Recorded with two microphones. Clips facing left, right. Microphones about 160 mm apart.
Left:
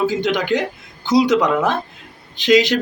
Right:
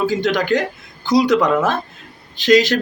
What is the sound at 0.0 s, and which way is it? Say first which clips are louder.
Speech: right 1 dB; 20° left (ahead or behind).